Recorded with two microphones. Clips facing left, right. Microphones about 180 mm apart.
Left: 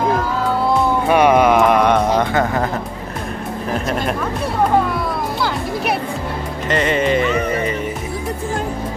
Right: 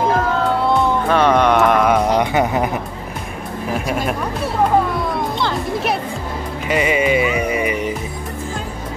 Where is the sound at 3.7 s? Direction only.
5° right (ahead or behind).